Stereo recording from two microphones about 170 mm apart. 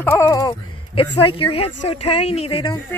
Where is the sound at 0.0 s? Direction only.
15° left (ahead or behind).